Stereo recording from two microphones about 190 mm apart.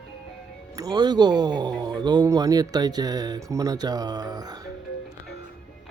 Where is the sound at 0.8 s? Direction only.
20° right (ahead or behind).